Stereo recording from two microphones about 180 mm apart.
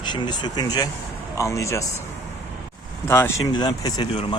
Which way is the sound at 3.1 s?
15° left (ahead or behind).